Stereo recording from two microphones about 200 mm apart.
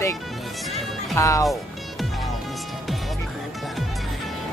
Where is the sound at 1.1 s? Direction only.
15° left (ahead or behind).